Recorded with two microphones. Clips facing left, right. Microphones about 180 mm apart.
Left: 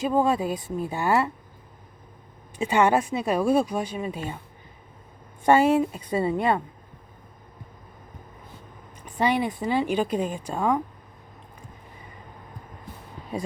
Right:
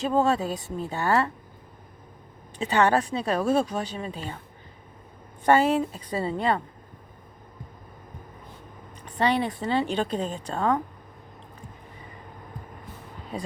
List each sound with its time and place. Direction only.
0.0 s speech: 10° left (ahead or behind)
2.6 s speech: 15° left (ahead or behind)
5.5 s a woman's voice: 15° left (ahead or behind)
9.1 s speech: 10° left (ahead or behind)